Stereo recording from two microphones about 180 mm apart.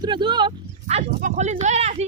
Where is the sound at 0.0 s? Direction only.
25° right (ahead or behind).